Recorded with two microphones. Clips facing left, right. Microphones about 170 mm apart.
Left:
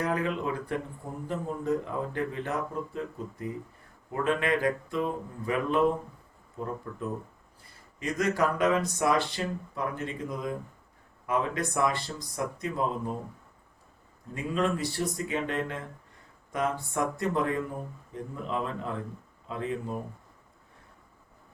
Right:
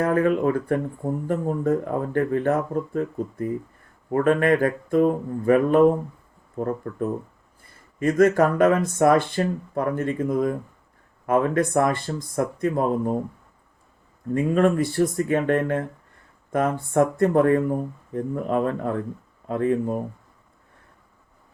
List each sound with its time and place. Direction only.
0.0 s speech: 50° right (ahead or behind)
7.9 s speech: 50° right (ahead or behind)
14.3 s speech: 55° right (ahead or behind)